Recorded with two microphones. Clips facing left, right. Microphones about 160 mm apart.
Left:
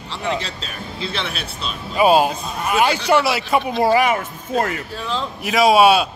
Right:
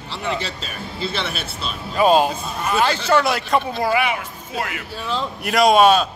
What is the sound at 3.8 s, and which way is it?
Speech, 35° left (ahead or behind).